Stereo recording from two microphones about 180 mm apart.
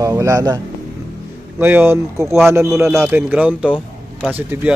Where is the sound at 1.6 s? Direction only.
10° right (ahead or behind).